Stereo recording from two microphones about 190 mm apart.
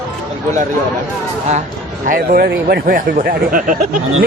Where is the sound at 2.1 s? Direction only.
50° right (ahead or behind).